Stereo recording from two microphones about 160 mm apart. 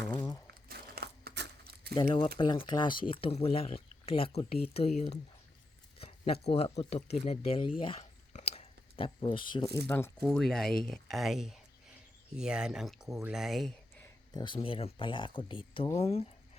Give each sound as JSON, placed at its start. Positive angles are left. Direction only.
{"t": 0.7, "sound": "crumpling", "side_deg": -85}
{"t": 2.4, "sound": "speech", "side_deg": 30}
{"t": 8.3, "sound": "a sound", "side_deg": 45}
{"t": 9.8, "sound": "speech", "side_deg": 10}
{"t": 10.2, "sound": "speech", "side_deg": 0}
{"t": 14.4, "sound": "speech", "side_deg": 35}